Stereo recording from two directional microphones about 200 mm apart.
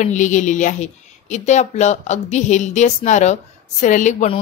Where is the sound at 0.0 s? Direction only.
35° left (ahead or behind).